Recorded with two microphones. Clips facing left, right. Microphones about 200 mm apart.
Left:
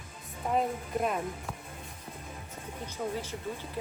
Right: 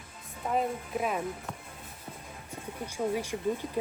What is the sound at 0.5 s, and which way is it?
Speech, centre (ahead or behind).